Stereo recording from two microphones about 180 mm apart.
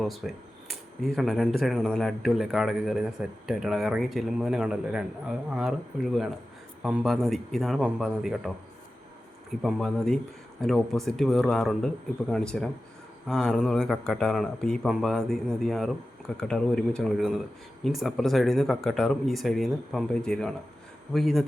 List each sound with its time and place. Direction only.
0.0 s speech: centre (ahead or behind)